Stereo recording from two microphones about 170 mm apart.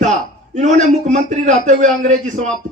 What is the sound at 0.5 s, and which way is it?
A man's voice, 45° right (ahead or behind).